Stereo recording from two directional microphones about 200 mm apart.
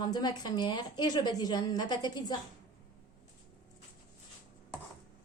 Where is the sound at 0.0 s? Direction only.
20° left (ahead or behind).